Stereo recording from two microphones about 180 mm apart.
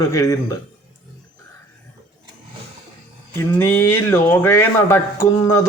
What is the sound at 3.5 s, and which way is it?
Speech, 15° left (ahead or behind).